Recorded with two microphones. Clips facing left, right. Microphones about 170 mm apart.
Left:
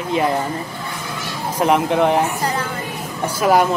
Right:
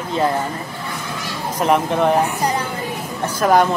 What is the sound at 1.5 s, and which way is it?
Speech, 15° left (ahead or behind).